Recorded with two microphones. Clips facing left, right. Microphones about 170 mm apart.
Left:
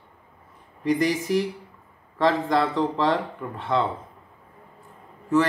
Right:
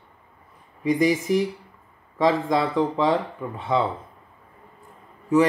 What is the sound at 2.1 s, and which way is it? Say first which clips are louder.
Speech: right 1 dB; 10° right (ahead or behind).